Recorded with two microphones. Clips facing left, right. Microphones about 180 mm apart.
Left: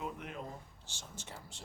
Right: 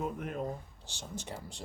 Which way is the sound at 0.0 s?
45° right (ahead or behind).